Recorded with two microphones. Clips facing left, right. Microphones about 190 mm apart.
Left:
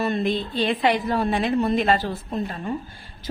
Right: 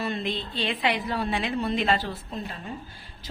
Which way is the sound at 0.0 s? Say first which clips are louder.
Left 6 dB; 45° left (ahead or behind).